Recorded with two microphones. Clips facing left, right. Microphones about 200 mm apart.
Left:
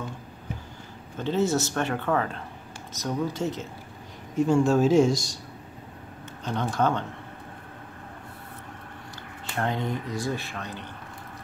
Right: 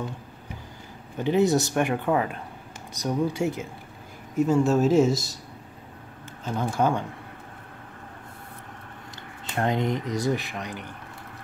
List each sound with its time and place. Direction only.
1.1 s speech: 15° right (ahead or behind)
6.4 s speech: 5° right (ahead or behind)
9.6 s speech: 20° right (ahead or behind)